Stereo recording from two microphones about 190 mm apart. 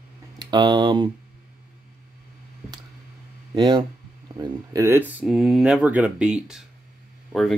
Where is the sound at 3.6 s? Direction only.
25° right (ahead or behind).